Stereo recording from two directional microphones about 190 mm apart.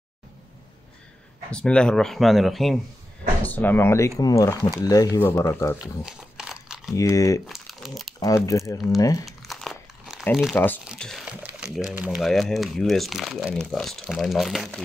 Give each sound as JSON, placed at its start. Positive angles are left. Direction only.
{"t": 1.5, "sound": "speech", "side_deg": 5}
{"t": 6.0, "sound": "crumpling", "side_deg": -5}
{"t": 7.0, "sound": "speech", "side_deg": 15}
{"t": 7.4, "sound": "crumpling", "side_deg": 0}
{"t": 8.5, "sound": "speech", "side_deg": 15}
{"t": 9.4, "sound": "crumpling", "side_deg": 0}
{"t": 10.9, "sound": "speech", "side_deg": 0}